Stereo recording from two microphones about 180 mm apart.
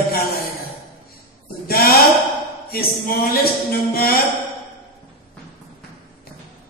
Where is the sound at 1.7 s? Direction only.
55° left (ahead or behind).